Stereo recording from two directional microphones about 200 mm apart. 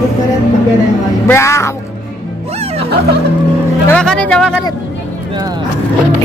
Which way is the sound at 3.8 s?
5° left (ahead or behind).